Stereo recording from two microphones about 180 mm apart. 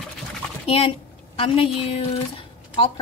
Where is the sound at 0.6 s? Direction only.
30° left (ahead or behind).